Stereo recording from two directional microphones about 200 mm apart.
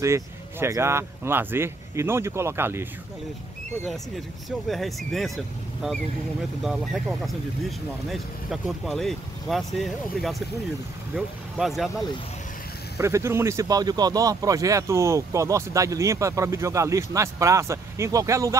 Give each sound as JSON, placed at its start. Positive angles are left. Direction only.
{"t": 0.0, "sound": "speech", "side_deg": -15}
{"t": 4.5, "sound": "speech", "side_deg": 0}
{"t": 12.9, "sound": "speech", "side_deg": -15}